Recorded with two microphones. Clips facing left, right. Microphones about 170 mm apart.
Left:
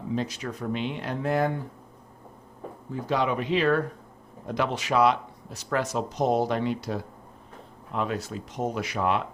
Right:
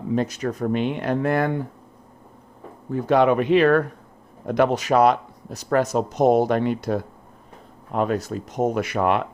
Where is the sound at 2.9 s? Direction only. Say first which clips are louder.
Right 9 dB; 60° right (ahead or behind).